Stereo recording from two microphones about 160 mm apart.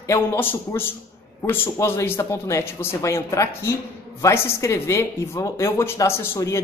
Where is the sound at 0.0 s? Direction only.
20° left (ahead or behind).